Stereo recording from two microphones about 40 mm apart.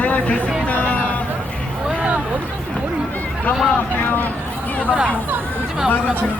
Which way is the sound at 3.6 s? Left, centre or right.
Left.